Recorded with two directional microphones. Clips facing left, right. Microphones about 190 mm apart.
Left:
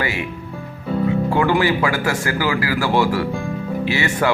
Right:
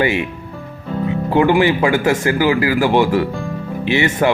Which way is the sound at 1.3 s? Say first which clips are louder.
Right 7 dB; 20° right (ahead or behind).